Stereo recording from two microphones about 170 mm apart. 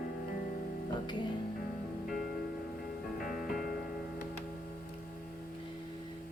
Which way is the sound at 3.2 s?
55° left (ahead or behind).